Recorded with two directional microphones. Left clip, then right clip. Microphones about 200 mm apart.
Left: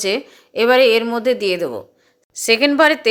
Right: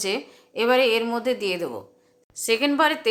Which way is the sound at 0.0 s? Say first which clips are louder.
Left 7 dB; 25° left (ahead or behind).